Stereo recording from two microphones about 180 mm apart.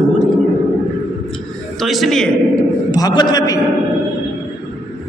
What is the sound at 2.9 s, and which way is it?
Speech, 20° left (ahead or behind).